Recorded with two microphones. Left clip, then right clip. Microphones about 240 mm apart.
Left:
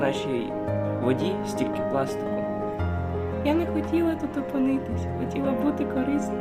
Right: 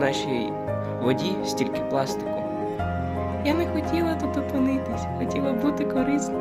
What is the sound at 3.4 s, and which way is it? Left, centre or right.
Speech, right.